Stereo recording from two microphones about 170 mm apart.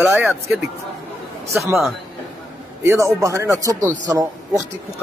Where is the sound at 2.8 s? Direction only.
15° right (ahead or behind).